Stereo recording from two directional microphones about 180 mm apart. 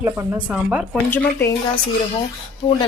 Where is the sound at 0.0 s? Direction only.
10° right (ahead or behind).